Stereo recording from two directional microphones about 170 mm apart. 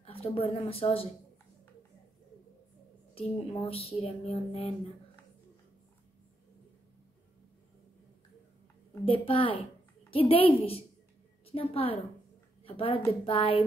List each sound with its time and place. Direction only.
0.0 s a woman's voice: 35° left (ahead or behind)
3.2 s speech: 35° left (ahead or behind)
9.0 s a woman's voice: 30° left (ahead or behind)